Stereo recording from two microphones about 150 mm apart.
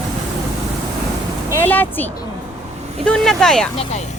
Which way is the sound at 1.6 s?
10° left (ahead or behind).